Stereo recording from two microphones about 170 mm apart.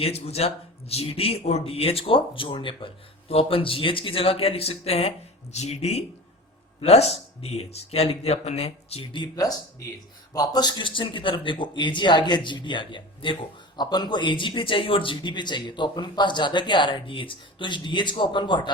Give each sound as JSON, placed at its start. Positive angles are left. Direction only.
{"t": 0.0, "sound": "speech", "side_deg": 35}